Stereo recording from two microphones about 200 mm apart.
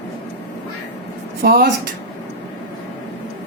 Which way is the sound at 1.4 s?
50° right (ahead or behind).